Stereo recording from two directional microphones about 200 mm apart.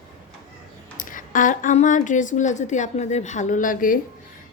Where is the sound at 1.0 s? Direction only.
40° left (ahead or behind).